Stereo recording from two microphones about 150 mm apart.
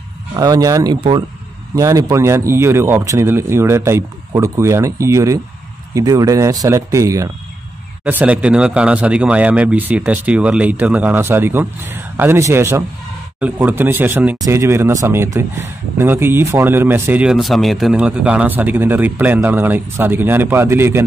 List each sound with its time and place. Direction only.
0.4 s speech: 25° right (ahead or behind)